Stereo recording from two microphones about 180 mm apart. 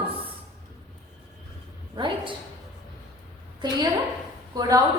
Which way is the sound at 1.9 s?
25° right (ahead or behind).